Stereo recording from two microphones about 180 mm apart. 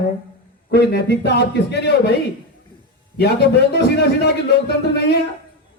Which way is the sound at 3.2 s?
65° left (ahead or behind).